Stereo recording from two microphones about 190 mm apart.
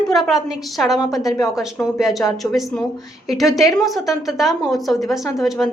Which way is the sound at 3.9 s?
Centre (ahead or behind).